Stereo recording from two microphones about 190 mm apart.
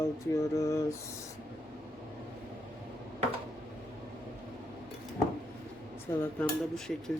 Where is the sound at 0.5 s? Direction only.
15° left (ahead or behind).